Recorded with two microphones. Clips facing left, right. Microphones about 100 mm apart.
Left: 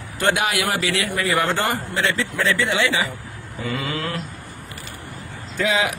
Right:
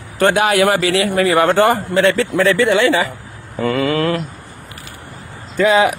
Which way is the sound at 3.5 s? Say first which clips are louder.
Right 10 dB; 70° right (ahead or behind).